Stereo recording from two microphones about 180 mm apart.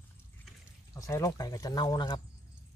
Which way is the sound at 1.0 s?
15° left (ahead or behind).